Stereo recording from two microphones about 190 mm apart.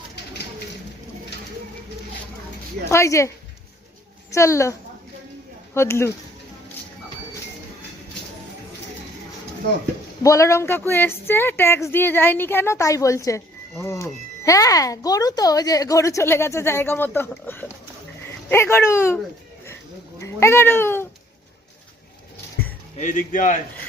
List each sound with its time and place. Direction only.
2.9 s speech: 15° left (ahead or behind)
10.2 s speech: 15° left (ahead or behind)
20.1 s cat: 15° left (ahead or behind)
23.0 s speech: 40° left (ahead or behind)